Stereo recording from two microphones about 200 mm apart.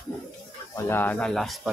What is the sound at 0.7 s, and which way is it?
Speech, 10° left (ahead or behind).